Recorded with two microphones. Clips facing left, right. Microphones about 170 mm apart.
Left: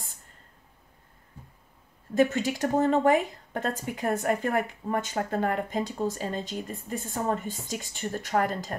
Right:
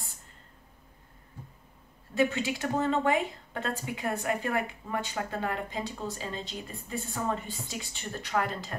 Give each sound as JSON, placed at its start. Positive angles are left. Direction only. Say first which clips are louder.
{"t": 2.1, "sound": "speech", "louder": "left 4 dB", "side_deg": 45}